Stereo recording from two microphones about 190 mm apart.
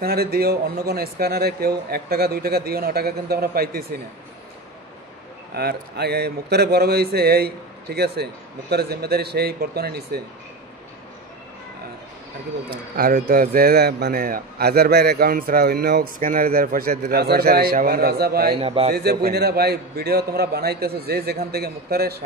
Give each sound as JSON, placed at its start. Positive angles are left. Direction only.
{"t": 0.0, "sound": "a man's voice", "side_deg": -55}
{"t": 5.5, "sound": "speech", "side_deg": -55}
{"t": 12.9, "sound": "a man's voice", "side_deg": -50}
{"t": 18.6, "sound": "a man's voice", "side_deg": -30}
{"t": 18.9, "sound": "speech", "side_deg": -55}